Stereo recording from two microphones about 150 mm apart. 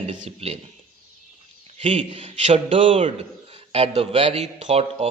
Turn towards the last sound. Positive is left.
turn(degrees=-45)  # may be behind; listen again after turning